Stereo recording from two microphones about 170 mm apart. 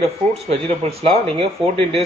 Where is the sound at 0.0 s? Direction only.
35° right (ahead or behind).